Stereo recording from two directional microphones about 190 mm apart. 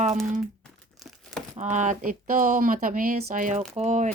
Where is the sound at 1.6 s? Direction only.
40° right (ahead or behind).